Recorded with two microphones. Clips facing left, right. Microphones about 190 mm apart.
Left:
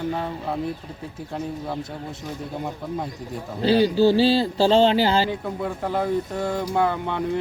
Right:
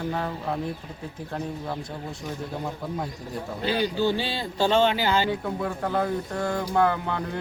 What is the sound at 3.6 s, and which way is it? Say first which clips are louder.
Speech: left 7 dB; 35° left (ahead or behind).